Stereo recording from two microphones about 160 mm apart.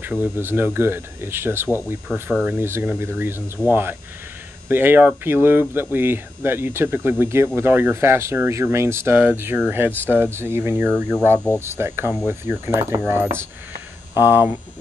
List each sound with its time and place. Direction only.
0.0 s speech: 10° right (ahead or behind)